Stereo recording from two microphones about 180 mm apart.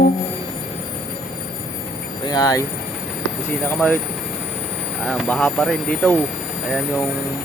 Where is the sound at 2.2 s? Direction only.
20° left (ahead or behind).